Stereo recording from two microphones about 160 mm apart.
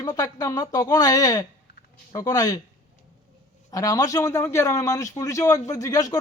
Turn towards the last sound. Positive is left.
turn(degrees=20)  # may be behind; listen again after turning